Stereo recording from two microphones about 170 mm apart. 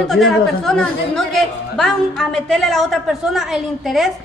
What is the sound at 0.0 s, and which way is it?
A woman's voice, centre (ahead or behind).